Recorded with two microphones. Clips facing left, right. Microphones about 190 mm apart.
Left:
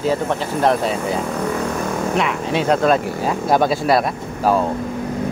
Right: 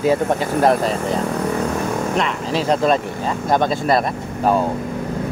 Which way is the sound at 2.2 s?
5° left (ahead or behind).